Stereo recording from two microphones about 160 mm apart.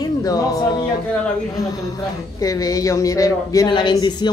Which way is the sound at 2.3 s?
20° left (ahead or behind).